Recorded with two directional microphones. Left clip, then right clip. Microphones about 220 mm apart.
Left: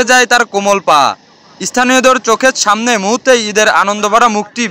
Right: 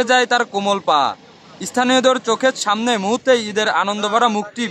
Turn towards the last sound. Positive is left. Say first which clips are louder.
# left 7 dB
turn(degrees=10)  # may be behind; listen again after turning